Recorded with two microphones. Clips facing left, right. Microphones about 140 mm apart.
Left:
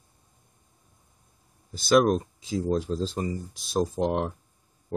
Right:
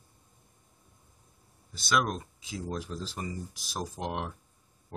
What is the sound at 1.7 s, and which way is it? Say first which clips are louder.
Speech: left 9 dB; 35° left (ahead or behind).